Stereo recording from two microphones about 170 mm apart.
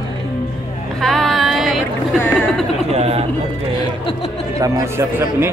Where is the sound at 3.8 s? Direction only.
30° left (ahead or behind).